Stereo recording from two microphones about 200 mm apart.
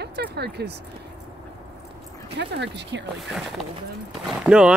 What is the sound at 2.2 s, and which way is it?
Speech, 55° right (ahead or behind).